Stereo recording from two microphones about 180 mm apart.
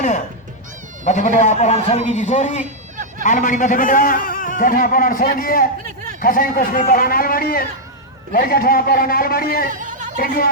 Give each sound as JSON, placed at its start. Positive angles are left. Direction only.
{"t": 1.0, "sound": "a man's voice", "side_deg": 40}
{"t": 2.6, "sound": "a sound", "side_deg": -45}
{"t": 3.2, "sound": "a man's voice", "side_deg": 45}
{"t": 9.6, "sound": "chatter", "side_deg": -45}
{"t": 10.2, "sound": "a man's voice", "side_deg": 50}